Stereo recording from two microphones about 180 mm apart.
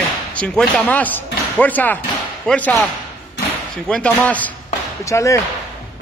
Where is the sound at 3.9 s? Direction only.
5° left (ahead or behind).